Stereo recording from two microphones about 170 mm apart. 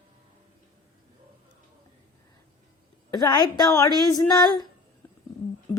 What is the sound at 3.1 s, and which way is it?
Speech, 25° left (ahead or behind).